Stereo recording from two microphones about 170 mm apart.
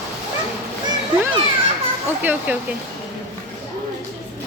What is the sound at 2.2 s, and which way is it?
Speech, 10° right (ahead or behind).